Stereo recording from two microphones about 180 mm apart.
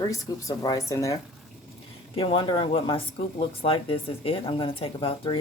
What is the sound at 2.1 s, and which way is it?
Speech, 30° left (ahead or behind).